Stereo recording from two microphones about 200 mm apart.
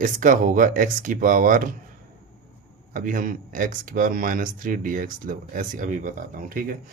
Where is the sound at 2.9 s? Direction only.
40° right (ahead or behind).